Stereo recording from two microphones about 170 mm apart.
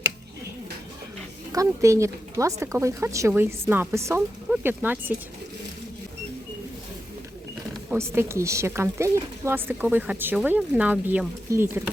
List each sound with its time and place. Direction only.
1.5 s a woman's voice: 15° right (ahead or behind)
7.9 s a woman's voice: 15° right (ahead or behind)